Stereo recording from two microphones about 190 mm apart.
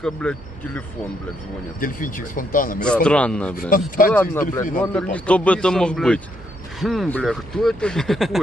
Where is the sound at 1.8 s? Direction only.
45° left (ahead or behind).